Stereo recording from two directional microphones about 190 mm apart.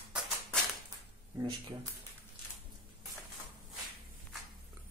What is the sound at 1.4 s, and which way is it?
Speech, 25° right (ahead or behind).